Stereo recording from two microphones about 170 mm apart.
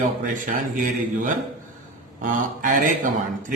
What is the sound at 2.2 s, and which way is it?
Speech, 50° right (ahead or behind).